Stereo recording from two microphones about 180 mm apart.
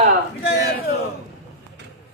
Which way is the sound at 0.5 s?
60° left (ahead or behind).